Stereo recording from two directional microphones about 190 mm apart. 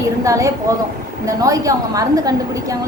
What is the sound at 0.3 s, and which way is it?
A woman's voice, 15° right (ahead or behind).